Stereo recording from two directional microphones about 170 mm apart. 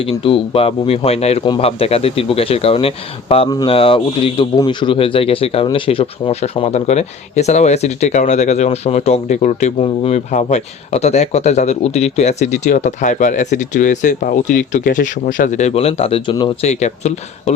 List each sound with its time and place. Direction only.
0.0 s speech: 30° left (ahead or behind)
16.6 s speech: 40° left (ahead or behind)